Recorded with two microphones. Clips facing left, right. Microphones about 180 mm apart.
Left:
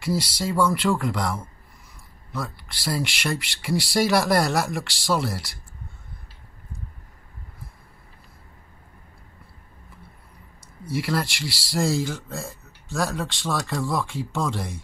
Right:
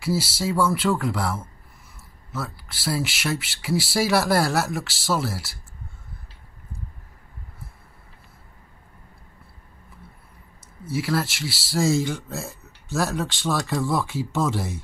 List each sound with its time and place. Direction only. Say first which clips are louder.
0.0 s speech: right 1 dB; 5° right (ahead or behind)
10.9 s speech: right 1 dB; 5° right (ahead or behind)